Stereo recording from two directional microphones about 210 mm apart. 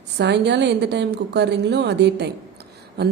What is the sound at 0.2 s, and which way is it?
A woman's voice, 55° right (ahead or behind).